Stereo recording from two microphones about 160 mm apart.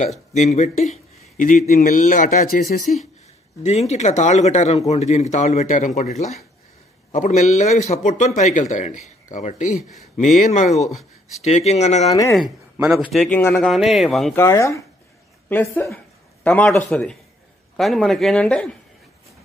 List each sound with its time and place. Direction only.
0.3 s speech: 45° left (ahead or behind); by 2.9 s 65° left (ahead or behind)
3.6 s a man's voice: 40° left (ahead or behind)
7.1 s a man's voice: 50° left (ahead or behind)
12.1 s speech: 20° left (ahead or behind)
12.7 s a man's voice: 10° right (ahead or behind)
13.1 s speech: centre (ahead or behind)
13.7 s speech: centre (ahead or behind)
14.3 s a woman's voice: 20° left (ahead or behind)